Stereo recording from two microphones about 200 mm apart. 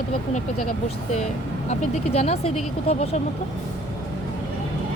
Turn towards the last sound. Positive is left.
turn(degrees=30)  # may be behind; listen again after turning